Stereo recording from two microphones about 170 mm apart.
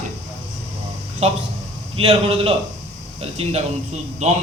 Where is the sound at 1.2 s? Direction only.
40° right (ahead or behind).